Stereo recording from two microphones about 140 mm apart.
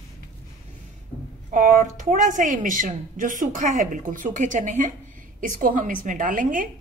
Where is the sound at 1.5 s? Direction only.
75° right (ahead or behind).